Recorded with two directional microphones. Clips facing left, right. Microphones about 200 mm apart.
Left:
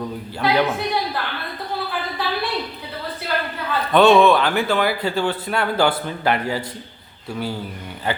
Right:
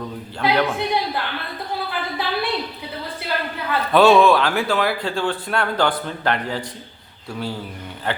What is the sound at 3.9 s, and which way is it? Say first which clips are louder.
A man's voice: even; centre (ahead or behind).